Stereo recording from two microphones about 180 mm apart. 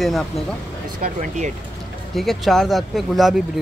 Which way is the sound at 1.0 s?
45° right (ahead or behind).